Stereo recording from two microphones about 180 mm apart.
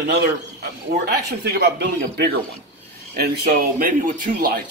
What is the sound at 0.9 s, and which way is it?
A man's voice, 65° right (ahead or behind).